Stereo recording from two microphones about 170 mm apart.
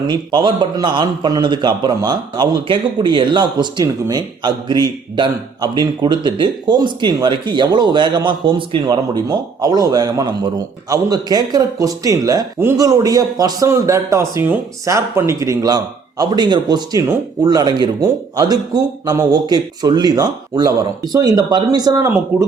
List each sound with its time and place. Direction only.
0.1 s a man's voice: 25° right (ahead or behind)